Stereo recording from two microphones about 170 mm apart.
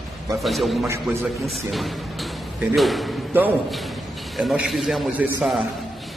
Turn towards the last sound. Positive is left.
turn(degrees=0)  # may be behind; listen again after turning